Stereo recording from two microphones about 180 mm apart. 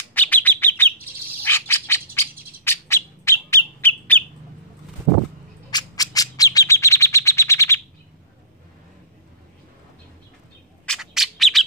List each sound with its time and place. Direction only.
0.1 s bird: 10° left (ahead or behind)
5.7 s bird: 20° left (ahead or behind)
10.9 s a sound: centre (ahead or behind)